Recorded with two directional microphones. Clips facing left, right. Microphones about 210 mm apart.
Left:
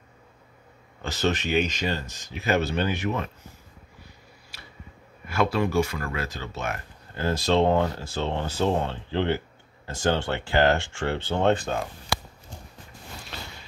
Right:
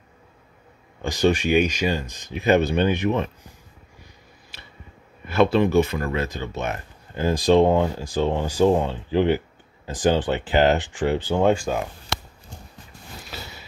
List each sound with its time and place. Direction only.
1.0 s speech: 10° right (ahead or behind)
5.3 s speech: 25° right (ahead or behind)
13.3 s a sound: 5° right (ahead or behind)